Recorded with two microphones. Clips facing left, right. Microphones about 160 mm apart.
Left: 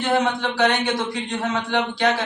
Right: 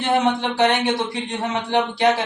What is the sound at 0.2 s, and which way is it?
A man's voice, 20° right (ahead or behind).